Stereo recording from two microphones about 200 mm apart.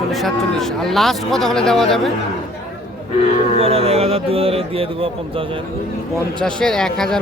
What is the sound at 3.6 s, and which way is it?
A man's voice, 30° right (ahead or behind).